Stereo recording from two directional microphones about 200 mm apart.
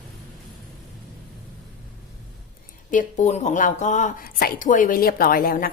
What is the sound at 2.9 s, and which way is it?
Speech, 40° left (ahead or behind).